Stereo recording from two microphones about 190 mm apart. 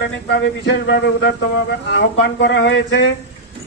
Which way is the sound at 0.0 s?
65° left (ahead or behind).